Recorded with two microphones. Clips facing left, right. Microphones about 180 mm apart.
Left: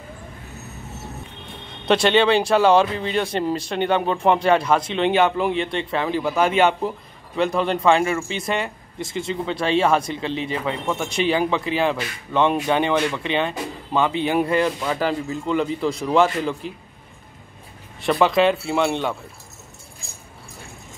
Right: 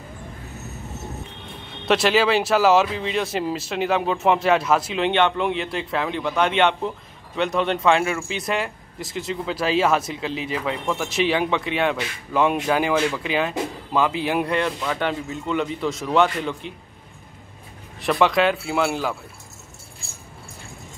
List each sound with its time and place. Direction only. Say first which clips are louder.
1.9 s a man's voice: left 2 dB; centre (ahead or behind)
18.0 s a man's voice: left 2 dB; centre (ahead or behind)